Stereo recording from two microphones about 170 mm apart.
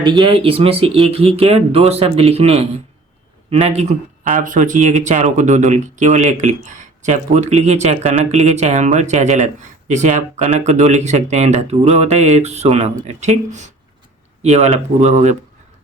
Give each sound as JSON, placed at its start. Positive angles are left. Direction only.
{"t": 0.0, "sound": "speech", "side_deg": -25}